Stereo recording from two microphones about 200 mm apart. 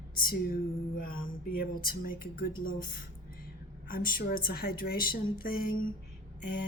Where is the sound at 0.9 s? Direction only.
45° left (ahead or behind).